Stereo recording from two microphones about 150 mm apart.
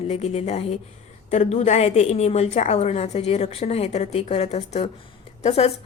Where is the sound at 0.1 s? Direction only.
45° left (ahead or behind).